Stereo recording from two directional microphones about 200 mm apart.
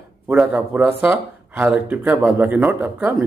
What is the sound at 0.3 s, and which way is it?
Speech, 10° right (ahead or behind).